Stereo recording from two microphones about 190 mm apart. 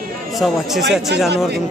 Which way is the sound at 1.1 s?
65° right (ahead or behind).